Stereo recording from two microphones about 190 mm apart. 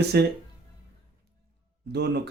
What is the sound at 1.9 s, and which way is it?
Speech, 60° right (ahead or behind).